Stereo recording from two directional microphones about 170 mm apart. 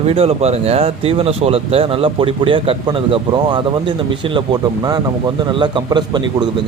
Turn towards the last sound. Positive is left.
turn(degrees=-25)  # may be behind; listen again after turning